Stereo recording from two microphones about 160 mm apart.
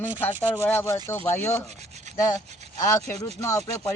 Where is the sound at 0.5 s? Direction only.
15° left (ahead or behind).